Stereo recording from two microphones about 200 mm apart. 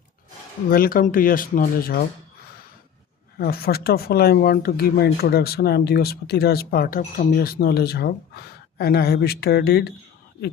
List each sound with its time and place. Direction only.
0.7 s speech: 45° left (ahead or behind)
3.3 s speech: 50° left (ahead or behind)